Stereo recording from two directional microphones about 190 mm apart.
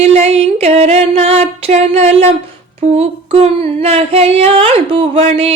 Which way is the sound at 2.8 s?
35° right (ahead or behind).